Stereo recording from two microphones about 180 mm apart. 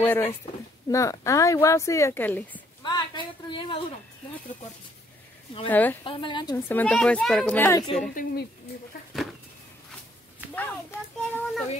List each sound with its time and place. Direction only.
0.0 s speech: 10° left (ahead or behind)
2.8 s speech: 25° left (ahead or behind)
5.7 s speech: 10° left (ahead or behind)
6.0 s a woman's voice: 25° left (ahead or behind)
6.5 s speech: 10° left (ahead or behind)
8.1 s speech: 50° left (ahead or behind)
9.1 s a sound: centre (ahead or behind)
10.5 s a sound: 10° left (ahead or behind)